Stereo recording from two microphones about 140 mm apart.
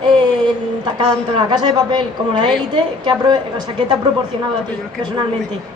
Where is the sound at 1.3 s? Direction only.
30° right (ahead or behind).